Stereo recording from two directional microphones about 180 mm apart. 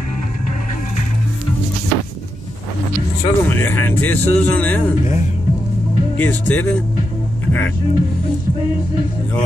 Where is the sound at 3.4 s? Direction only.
10° left (ahead or behind).